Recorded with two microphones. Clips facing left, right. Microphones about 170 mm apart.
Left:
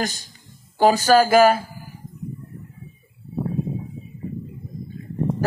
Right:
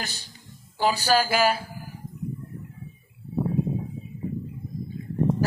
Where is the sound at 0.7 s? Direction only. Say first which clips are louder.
Left 7 dB; 40° left (ahead or behind).